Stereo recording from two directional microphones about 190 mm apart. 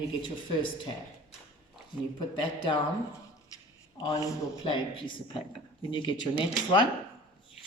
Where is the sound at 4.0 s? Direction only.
25° left (ahead or behind).